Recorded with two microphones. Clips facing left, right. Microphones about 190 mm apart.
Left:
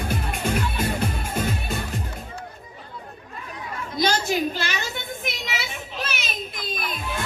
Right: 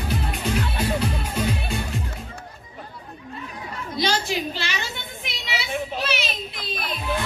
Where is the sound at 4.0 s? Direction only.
45° left (ahead or behind).